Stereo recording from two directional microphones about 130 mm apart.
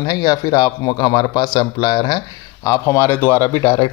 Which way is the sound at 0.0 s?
30° left (ahead or behind).